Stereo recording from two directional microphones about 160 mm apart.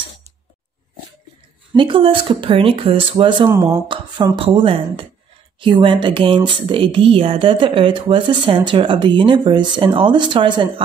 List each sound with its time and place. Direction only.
1.8 s speech: 30° right (ahead or behind)
3.4 s speech: 15° right (ahead or behind)
4.4 s speech: 35° right (ahead or behind)